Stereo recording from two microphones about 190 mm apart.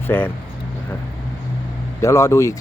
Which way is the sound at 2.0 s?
15° left (ahead or behind).